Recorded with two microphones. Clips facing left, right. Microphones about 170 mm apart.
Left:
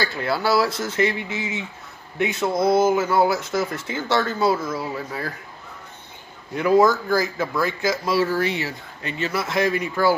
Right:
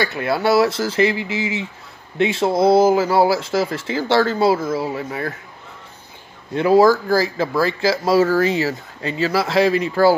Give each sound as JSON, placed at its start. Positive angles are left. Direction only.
{"t": 0.1, "sound": "speech", "side_deg": -20}
{"t": 6.5, "sound": "speech", "side_deg": -30}